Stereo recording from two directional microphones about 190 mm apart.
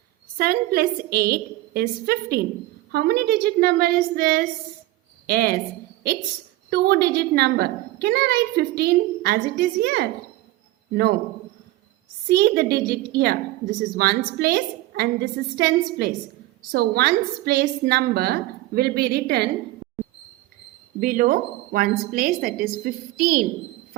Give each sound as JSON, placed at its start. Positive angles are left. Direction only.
{"t": 0.3, "sound": "a woman's voice", "side_deg": -50}
{"t": 6.7, "sound": "a woman's voice", "side_deg": -60}
{"t": 12.3, "sound": "a woman's voice", "side_deg": -55}
{"t": 21.0, "sound": "speech", "side_deg": -45}